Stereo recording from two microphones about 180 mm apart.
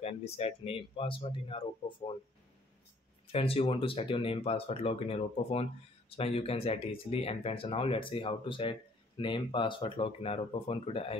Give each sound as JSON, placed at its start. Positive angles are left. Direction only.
{"t": 0.0, "sound": "a man's voice", "side_deg": 35}
{"t": 3.3, "sound": "speech", "side_deg": 30}